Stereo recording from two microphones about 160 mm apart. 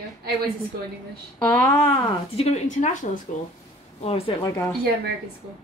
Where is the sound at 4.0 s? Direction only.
40° left (ahead or behind).